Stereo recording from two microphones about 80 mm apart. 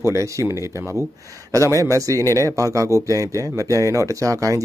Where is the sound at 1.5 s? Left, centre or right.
Right.